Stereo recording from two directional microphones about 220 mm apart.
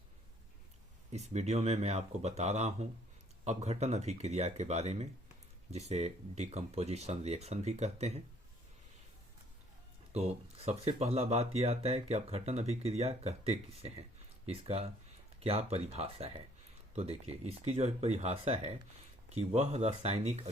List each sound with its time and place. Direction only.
1.1 s speech: 30° right (ahead or behind)
10.7 s speech: 30° right (ahead or behind)